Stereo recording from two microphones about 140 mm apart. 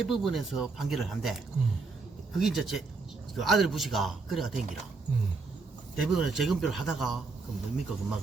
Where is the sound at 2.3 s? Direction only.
Centre (ahead or behind).